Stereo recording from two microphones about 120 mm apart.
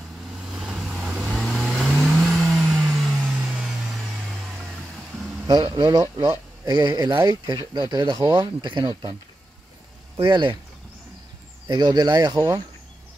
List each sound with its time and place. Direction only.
0.5 s vehicle: 5° right (ahead or behind)
5.5 s speech: 35° right (ahead or behind)
10.2 s speech: 40° right (ahead or behind)
11.6 s speech: 35° right (ahead or behind)